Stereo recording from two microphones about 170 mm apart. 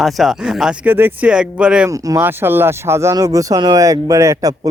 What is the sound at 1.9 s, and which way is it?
Speech, 20° right (ahead or behind).